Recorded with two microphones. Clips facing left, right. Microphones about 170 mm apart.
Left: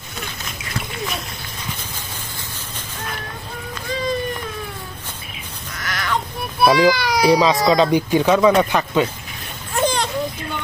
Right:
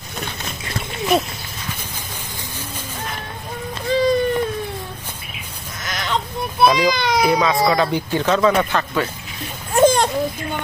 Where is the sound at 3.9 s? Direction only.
30° right (ahead or behind).